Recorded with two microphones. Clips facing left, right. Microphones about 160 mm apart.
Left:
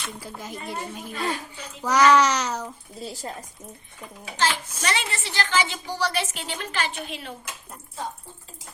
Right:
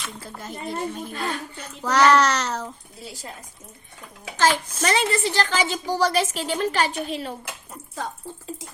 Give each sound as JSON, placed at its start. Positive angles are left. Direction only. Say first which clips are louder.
{"t": 0.0, "sound": "a woman's voice", "louder": "even", "side_deg": 10}
{"t": 4.8, "sound": "a woman's voice", "louder": "right 7 dB", "side_deg": -40}